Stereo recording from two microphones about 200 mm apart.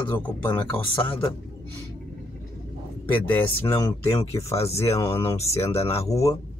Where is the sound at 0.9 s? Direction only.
25° left (ahead or behind).